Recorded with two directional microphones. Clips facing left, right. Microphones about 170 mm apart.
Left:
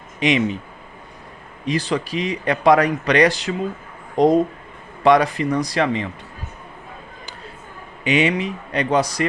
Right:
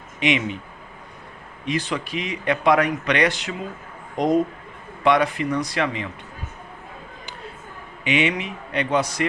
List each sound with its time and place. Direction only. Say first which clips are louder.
0.2 s speech: left 3 dB; 35° left (ahead or behind)
1.6 s speech: left 4 dB; 35° left (ahead or behind)
8.0 s speech: left 3 dB; 40° left (ahead or behind)